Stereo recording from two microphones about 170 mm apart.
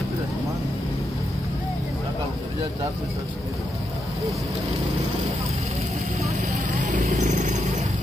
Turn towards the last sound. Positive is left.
turn(degrees=-45)  # may be behind; listen again after turning